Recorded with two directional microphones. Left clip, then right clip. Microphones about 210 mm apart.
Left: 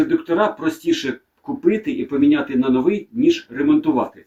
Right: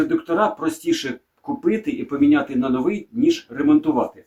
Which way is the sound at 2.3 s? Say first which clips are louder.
Left 1 dB; 25° right (ahead or behind).